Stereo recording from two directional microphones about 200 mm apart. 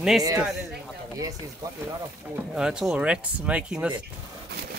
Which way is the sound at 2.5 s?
5° right (ahead or behind).